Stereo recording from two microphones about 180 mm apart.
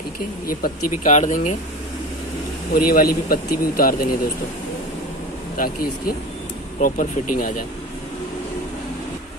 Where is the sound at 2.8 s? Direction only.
55° left (ahead or behind).